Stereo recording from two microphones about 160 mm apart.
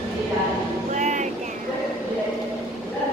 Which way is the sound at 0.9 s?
50° right (ahead or behind).